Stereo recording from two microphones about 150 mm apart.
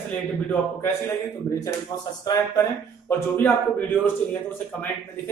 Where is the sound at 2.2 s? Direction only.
25° left (ahead or behind).